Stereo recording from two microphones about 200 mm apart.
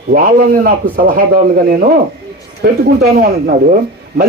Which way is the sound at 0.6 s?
45° right (ahead or behind).